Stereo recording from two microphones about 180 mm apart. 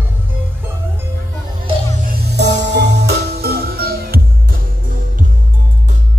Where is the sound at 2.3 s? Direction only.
70° right (ahead or behind).